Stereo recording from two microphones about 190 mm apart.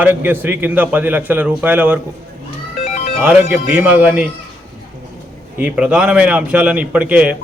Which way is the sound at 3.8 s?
10° right (ahead or behind).